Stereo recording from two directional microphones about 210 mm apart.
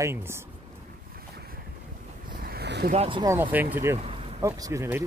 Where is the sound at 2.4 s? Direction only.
50° right (ahead or behind).